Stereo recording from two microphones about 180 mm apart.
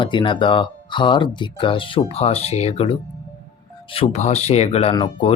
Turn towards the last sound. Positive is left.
turn(degrees=25)  # may be behind; listen again after turning